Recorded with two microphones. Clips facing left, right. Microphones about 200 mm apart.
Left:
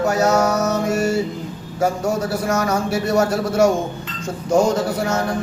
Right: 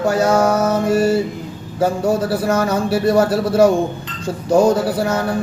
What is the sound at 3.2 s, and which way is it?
Speech, 30° right (ahead or behind).